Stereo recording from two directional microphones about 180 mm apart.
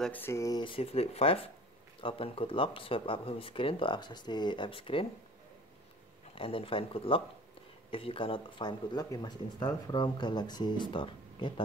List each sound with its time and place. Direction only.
0.0 s speech: 10° left (ahead or behind); by 5.0 s 30° left (ahead or behind)
6.3 s speech: 30° left (ahead or behind)